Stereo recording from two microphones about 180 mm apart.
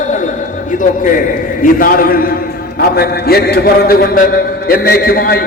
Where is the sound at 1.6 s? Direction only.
50° left (ahead or behind).